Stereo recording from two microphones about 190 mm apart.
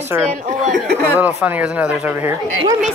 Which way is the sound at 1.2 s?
10° right (ahead or behind).